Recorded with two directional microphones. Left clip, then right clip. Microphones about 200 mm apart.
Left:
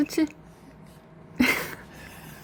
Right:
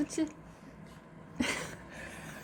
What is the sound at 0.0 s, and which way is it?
Speech, 35° left (ahead or behind).